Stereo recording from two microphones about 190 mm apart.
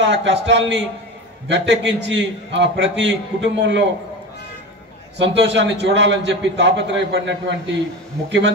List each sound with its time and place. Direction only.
0.0 s a man's voice: 70° right (ahead or behind)
5.2 s a man's voice: 65° right (ahead or behind)